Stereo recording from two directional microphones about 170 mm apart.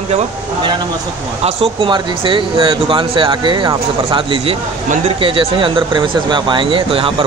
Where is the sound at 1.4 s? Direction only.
30° right (ahead or behind).